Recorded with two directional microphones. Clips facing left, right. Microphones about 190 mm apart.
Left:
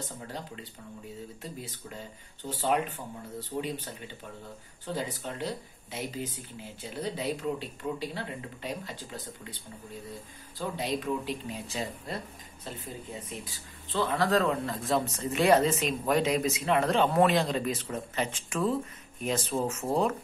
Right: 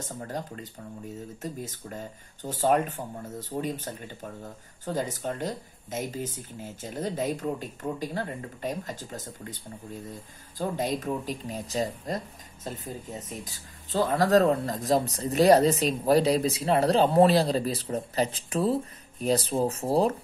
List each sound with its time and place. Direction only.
0.0 s speech: 45° right (ahead or behind)
10.6 s speech: 45° right (ahead or behind)